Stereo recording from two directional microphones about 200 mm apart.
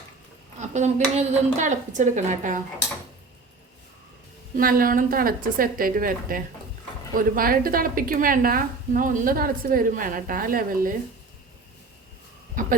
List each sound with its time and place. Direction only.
0.6 s a woman's voice: 35° right (ahead or behind)
4.5 s a woman's voice: 45° right (ahead or behind)